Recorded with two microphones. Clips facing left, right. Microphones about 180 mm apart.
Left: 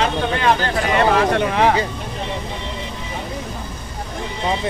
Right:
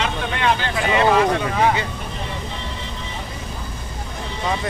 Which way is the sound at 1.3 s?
65° left (ahead or behind).